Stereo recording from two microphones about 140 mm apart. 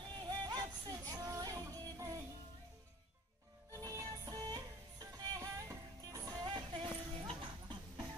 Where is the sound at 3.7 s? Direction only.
25° right (ahead or behind).